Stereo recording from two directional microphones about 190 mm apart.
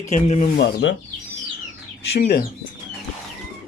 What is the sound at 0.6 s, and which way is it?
Speech, 60° left (ahead or behind).